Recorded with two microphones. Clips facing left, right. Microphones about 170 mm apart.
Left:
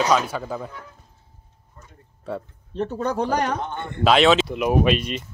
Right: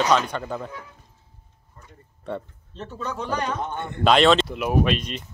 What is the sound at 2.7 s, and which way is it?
Speech, 65° left (ahead or behind).